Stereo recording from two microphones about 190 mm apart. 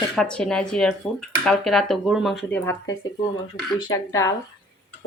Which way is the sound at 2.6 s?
15° left (ahead or behind).